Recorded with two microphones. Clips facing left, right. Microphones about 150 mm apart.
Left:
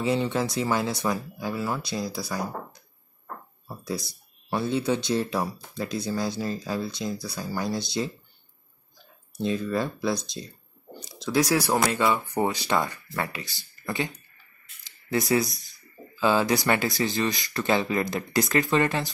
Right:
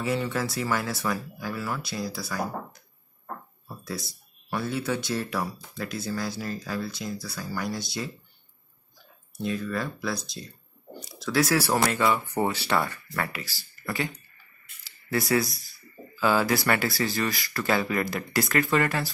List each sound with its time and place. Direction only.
0.0 s speech: 20° left (ahead or behind)
3.6 s a sound: 20° left (ahead or behind)
4.5 s speech: 25° left (ahead or behind)
9.4 s speech: 25° left (ahead or behind)